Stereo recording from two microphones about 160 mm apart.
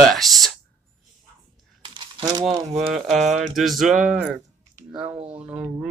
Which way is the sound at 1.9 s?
25° right (ahead or behind).